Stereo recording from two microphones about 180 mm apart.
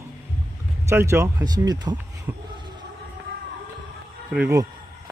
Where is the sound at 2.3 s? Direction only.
15° right (ahead or behind).